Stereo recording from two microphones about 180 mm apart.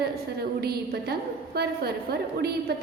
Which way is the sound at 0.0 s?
60° right (ahead or behind).